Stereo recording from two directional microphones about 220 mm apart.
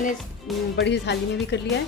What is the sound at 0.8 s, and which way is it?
Speech, 50° left (ahead or behind).